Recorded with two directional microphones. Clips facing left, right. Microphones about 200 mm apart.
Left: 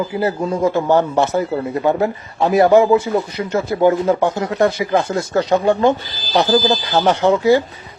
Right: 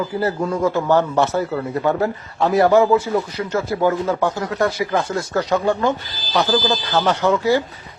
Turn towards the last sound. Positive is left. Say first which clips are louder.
# left 4 dB
turn(degrees=20)  # may be behind; listen again after turning